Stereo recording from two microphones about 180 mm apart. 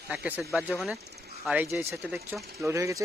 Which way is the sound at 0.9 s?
65° right (ahead or behind).